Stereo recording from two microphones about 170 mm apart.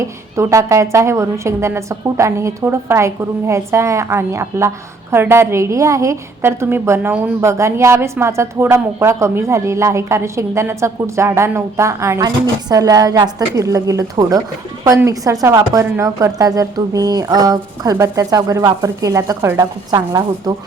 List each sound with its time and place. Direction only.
0.0 s a woman's voice: 15° right (ahead or behind)